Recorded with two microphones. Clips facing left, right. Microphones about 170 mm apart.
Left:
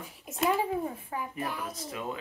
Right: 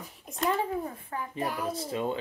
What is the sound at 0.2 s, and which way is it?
Speech, 5° left (ahead or behind).